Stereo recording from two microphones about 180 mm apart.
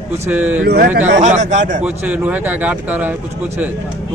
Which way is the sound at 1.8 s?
5° right (ahead or behind).